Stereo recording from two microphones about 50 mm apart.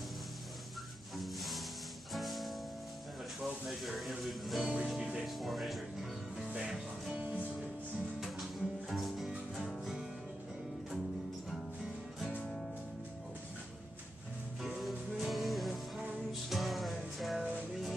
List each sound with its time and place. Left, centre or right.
1.1 s music: centre
3.3 s speech: centre
6.4 s music: centre
7.2 s music: right
8.2 s music: centre
14.7 s music: centre